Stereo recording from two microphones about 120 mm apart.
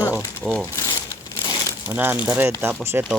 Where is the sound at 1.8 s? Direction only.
15° right (ahead or behind).